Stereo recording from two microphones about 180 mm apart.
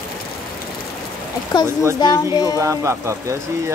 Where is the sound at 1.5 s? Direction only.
25° left (ahead or behind).